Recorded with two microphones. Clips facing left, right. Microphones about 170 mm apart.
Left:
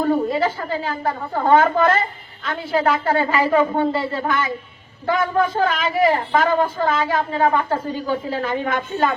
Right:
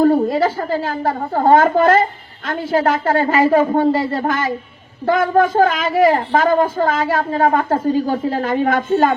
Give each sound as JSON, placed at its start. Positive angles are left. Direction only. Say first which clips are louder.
{"t": 0.0, "sound": "a woman's voice", "louder": "right 5 dB", "side_deg": -40}